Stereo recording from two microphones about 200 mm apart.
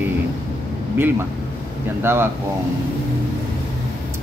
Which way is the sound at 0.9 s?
10° right (ahead or behind).